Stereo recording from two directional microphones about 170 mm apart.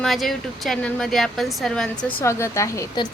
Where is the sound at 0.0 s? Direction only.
Centre (ahead or behind).